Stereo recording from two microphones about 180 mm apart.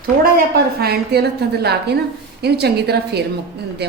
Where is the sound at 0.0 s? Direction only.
55° right (ahead or behind).